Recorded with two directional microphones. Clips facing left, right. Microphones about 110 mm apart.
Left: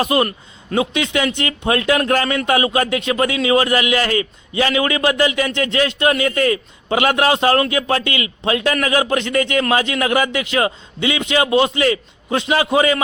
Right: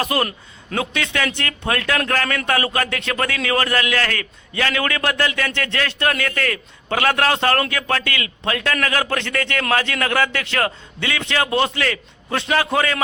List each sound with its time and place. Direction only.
0.0 s a man's voice: 20° left (ahead or behind)